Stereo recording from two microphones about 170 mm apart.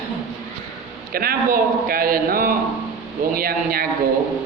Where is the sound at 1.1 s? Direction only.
60° right (ahead or behind).